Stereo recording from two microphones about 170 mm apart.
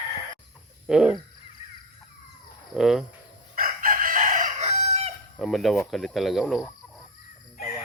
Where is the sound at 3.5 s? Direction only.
55° right (ahead or behind); by 5.1 s 40° right (ahead or behind).